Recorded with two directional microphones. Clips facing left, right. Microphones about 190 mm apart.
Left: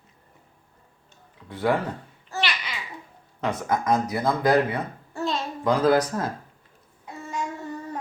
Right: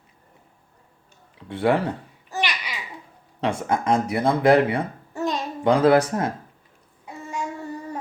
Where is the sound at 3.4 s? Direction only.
25° right (ahead or behind).